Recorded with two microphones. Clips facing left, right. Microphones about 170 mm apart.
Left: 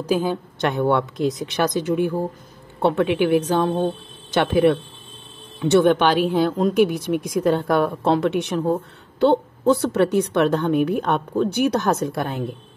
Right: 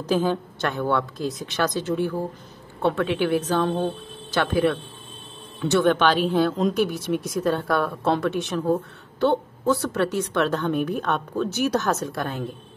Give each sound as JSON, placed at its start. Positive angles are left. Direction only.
{"t": 0.0, "sound": "a woman's voice", "side_deg": 10}